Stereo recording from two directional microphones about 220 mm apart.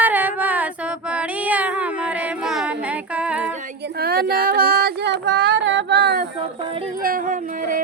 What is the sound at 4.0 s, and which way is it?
Female singing, 45° right (ahead or behind).